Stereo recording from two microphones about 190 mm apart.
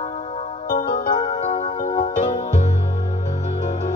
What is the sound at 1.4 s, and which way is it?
Music, 35° left (ahead or behind).